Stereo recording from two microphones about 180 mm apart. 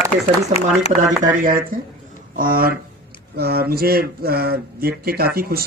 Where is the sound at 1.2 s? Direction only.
50° right (ahead or behind).